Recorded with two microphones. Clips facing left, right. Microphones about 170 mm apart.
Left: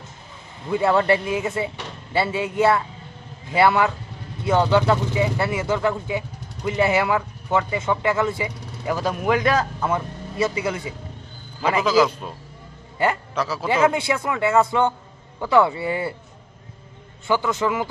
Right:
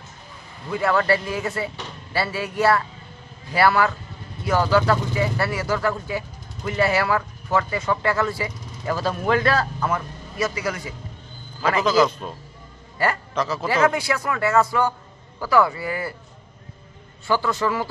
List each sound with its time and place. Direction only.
0.7 s speech: 25° left (ahead or behind)
11.6 s a man's voice: 10° left (ahead or behind)
13.9 s speech: 25° left (ahead or behind)
17.3 s a man's voice: 20° left (ahead or behind)